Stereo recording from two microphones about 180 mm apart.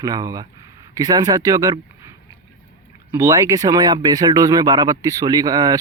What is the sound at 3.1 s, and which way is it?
Speech, 20° right (ahead or behind).